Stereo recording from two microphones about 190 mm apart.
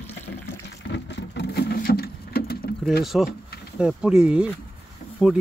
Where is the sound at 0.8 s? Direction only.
70° left (ahead or behind).